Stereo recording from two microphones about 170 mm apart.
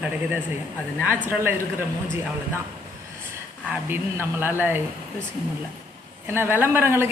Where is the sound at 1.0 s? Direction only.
10° right (ahead or behind).